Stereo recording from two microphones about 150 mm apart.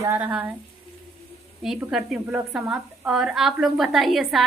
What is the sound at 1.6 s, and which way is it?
A woman's voice, centre (ahead or behind).